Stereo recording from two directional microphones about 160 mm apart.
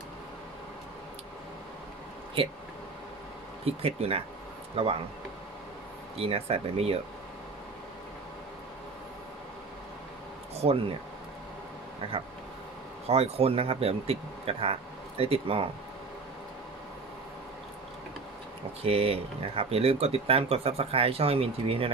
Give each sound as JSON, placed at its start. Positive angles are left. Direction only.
{"t": 3.6, "sound": "speech", "side_deg": -40}
{"t": 6.1, "sound": "speech", "side_deg": -40}
{"t": 10.5, "sound": "a sound", "side_deg": -40}
{"t": 12.0, "sound": "speech", "side_deg": -35}
{"t": 18.8, "sound": "speech", "side_deg": -40}